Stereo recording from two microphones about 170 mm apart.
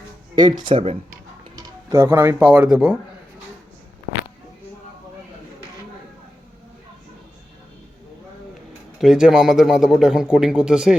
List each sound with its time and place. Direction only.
0.3 s speech: 25° right (ahead or behind)
1.5 s speech: 15° right (ahead or behind)
9.0 s a man's voice: 5° right (ahead or behind)